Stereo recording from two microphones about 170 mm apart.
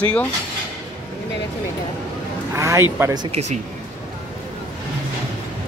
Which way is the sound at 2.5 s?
15° right (ahead or behind).